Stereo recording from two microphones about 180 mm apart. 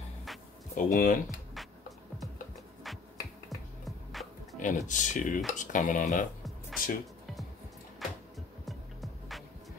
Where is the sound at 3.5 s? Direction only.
Centre (ahead or behind).